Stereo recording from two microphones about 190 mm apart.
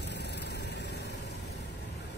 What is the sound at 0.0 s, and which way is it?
Vehicle, 65° left (ahead or behind).